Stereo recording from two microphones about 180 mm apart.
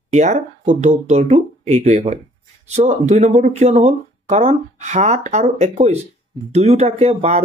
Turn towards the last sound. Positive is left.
turn(degrees=-35)  # may be behind; listen again after turning